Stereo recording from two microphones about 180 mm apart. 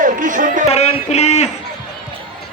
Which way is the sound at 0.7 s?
35° left (ahead or behind).